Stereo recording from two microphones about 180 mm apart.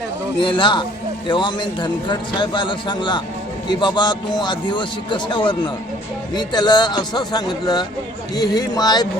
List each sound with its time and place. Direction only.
0.3 s a man's voice: 30° left (ahead or behind)